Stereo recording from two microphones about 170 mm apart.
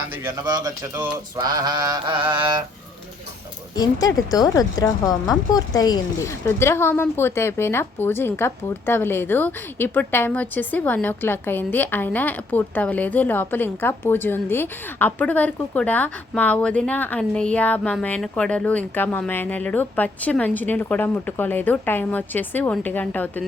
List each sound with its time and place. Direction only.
0.3 s mantra: 20° right (ahead or behind)
3.8 s a woman's voice: 20° left (ahead or behind)